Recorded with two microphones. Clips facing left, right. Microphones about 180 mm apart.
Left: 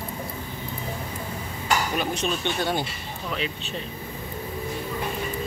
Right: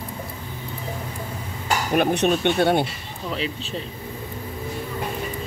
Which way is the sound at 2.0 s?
60° right (ahead or behind).